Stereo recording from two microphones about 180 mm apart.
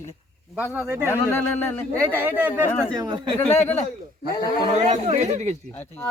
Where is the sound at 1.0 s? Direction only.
15° left (ahead or behind).